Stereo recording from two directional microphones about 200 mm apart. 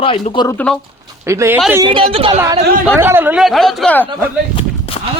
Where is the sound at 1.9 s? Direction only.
30° right (ahead or behind).